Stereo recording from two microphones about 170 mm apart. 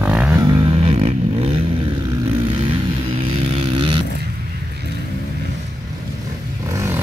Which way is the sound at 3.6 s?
30° right (ahead or behind).